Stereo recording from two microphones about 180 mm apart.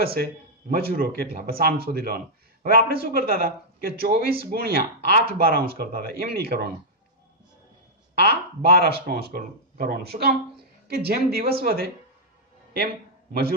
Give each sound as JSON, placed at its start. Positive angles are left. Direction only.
{"t": 0.0, "sound": "a man's voice", "side_deg": -60}
{"t": 8.1, "sound": "a man's voice", "side_deg": -60}
{"t": 12.7, "sound": "a sound", "side_deg": -60}